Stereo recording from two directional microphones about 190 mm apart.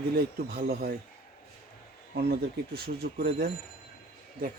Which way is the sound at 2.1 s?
55° right (ahead or behind).